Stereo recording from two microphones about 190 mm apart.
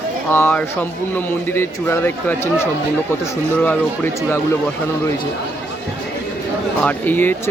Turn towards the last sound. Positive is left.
turn(degrees=10)  # may be behind; listen again after turning